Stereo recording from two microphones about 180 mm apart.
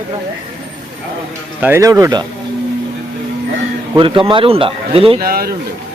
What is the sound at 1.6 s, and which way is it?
Speech, 15° right (ahead or behind).